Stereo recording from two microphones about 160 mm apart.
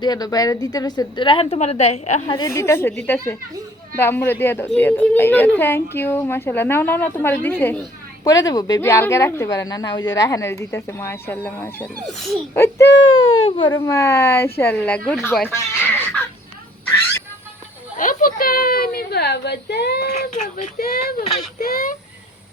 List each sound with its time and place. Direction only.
0.0 s a woman's voice: 25° left (ahead or behind); by 2.4 s 40° left (ahead or behind)
2.4 s a woman's voice: 15° left (ahead or behind)
8.2 s a woman's voice: 25° left (ahead or behind)
12.0 s speech: centre (ahead or behind)
13.4 s speech: 30° left (ahead or behind)
13.7 s a woman's voice: 20° left (ahead or behind)
17.9 s a child's voice: 60° left (ahead or behind); by 20.1 s 85° left
20.7 s a child's voice: 70° left (ahead or behind)